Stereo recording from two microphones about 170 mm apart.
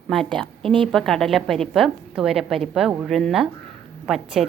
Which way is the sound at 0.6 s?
30° right (ahead or behind).